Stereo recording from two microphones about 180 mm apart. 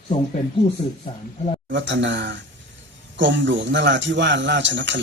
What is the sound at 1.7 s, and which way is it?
Speech, 90° right.